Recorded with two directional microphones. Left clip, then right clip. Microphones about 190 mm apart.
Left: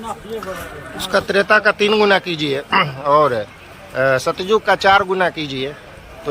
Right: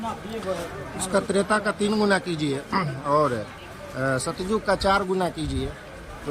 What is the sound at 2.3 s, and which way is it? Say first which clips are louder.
Speech: left 7 dB; 15° left (ahead or behind).